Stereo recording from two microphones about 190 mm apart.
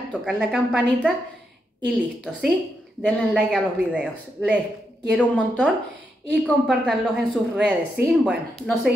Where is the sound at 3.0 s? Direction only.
Centre (ahead or behind).